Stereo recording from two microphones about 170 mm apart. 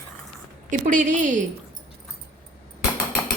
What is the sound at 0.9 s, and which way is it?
Speech, 45° right (ahead or behind).